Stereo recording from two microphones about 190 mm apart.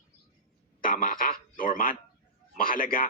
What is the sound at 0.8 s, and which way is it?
Speech, 45° left (ahead or behind).